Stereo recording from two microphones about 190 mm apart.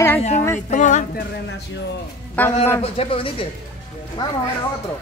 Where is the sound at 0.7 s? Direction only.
40° left (ahead or behind).